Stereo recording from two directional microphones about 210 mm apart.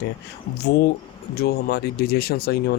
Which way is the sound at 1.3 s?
50° left (ahead or behind).